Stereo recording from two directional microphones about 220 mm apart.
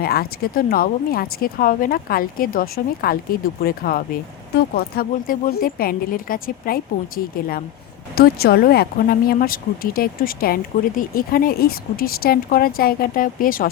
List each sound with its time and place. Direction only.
0.0 s speech: 40° left (ahead or behind)